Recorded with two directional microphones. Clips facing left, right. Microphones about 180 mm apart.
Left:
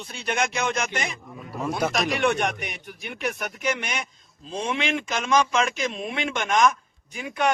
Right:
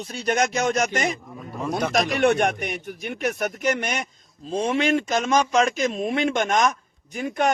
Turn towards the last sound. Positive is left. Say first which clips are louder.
# right 2 dB
turn(degrees=-45)  # may be behind; listen again after turning